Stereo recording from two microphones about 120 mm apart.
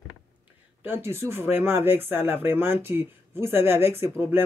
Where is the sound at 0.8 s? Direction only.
20° right (ahead or behind).